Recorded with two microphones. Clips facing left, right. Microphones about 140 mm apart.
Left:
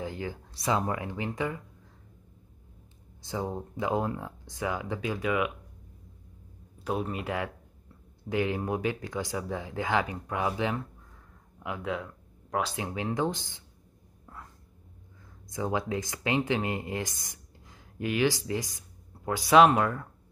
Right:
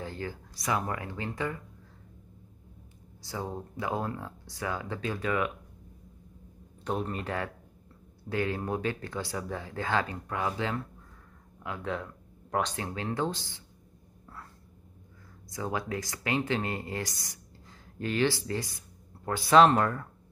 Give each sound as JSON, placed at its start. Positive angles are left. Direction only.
{"t": 0.0, "sound": "a sound", "side_deg": 15}
{"t": 0.6, "sound": "speech", "side_deg": 20}
{"t": 3.3, "sound": "speech", "side_deg": 15}
{"t": 6.8, "sound": "speech", "side_deg": 5}
{"t": 12.4, "sound": "a sound", "side_deg": 0}
{"t": 12.7, "sound": "speech", "side_deg": 15}
{"t": 15.5, "sound": "speech", "side_deg": 20}